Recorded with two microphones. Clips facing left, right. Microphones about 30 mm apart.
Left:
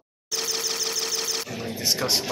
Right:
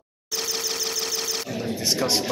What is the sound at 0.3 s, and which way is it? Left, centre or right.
Engine, centre.